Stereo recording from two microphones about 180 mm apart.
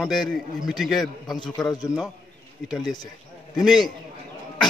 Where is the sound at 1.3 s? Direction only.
25° left (ahead or behind).